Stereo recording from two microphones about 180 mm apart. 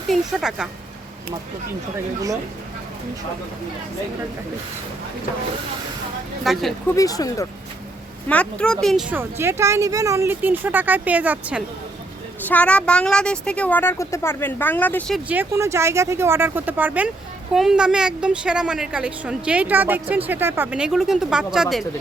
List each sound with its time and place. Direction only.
0.1 s a woman's voice: 5° right (ahead or behind)
6.4 s a woman's voice: centre (ahead or behind)
6.9 s speech: 20° left (ahead or behind)
8.3 s speech: 5° left (ahead or behind)
12.5 s speech: 5° left (ahead or behind)
15.3 s a woman's voice: 15° right (ahead or behind)